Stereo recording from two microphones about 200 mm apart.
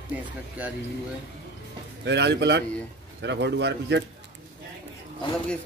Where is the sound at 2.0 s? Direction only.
60° right (ahead or behind).